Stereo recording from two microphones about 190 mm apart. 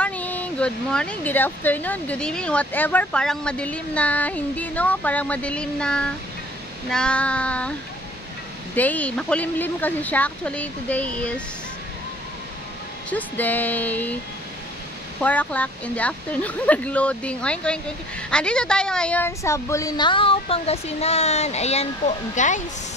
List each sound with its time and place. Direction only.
0.0 s speech: 10° left (ahead or behind)
8.7 s speech: 10° left (ahead or behind)
13.1 s speech: 10° left (ahead or behind)
15.1 s a woman's voice: 10° left (ahead or behind); by 22.6 s 40° left (ahead or behind)